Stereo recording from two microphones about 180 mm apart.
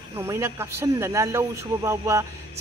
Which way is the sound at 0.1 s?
15° right (ahead or behind).